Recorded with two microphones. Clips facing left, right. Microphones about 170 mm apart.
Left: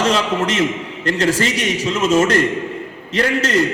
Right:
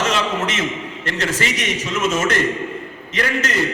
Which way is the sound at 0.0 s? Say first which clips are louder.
Left 3 dB; 35° left (ahead or behind).